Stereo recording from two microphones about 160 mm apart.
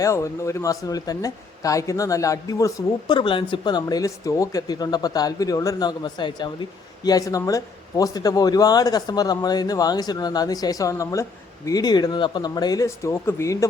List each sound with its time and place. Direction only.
0.0 s speech: 20° left (ahead or behind)